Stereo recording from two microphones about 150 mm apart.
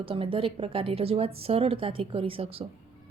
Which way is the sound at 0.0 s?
35° right (ahead or behind).